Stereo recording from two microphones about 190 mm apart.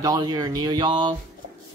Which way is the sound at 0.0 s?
20° right (ahead or behind).